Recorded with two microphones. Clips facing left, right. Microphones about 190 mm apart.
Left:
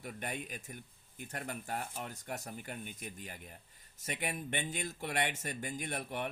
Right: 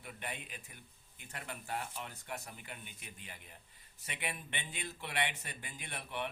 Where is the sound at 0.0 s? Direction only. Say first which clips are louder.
Left 4 dB; 45° left (ahead or behind).